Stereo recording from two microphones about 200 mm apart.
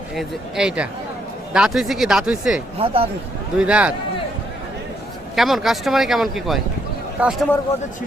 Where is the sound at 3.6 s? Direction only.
5° right (ahead or behind).